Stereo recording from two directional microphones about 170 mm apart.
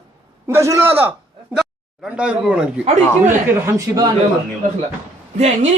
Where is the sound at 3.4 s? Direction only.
20° right (ahead or behind).